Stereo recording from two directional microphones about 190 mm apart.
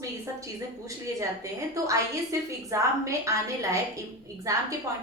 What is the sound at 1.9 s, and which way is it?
A woman's voice, 15° right (ahead or behind).